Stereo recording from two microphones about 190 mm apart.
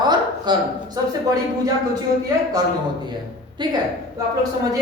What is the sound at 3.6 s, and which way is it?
Speech, 25° right (ahead or behind).